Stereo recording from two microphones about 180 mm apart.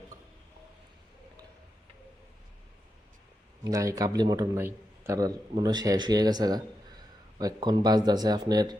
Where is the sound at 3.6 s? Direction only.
20° right (ahead or behind).